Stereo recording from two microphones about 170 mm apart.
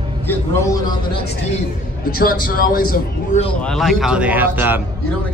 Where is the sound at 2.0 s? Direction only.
60° left (ahead or behind).